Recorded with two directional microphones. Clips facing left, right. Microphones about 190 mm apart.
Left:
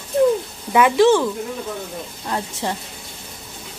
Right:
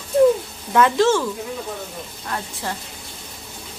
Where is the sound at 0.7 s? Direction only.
10° left (ahead or behind).